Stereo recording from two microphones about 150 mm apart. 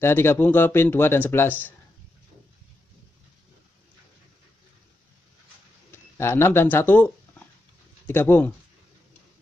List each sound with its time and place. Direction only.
0.0 s speech: 15° left (ahead or behind)
5.9 s a sound: 15° left (ahead or behind)
8.1 s speech: 15° left (ahead or behind)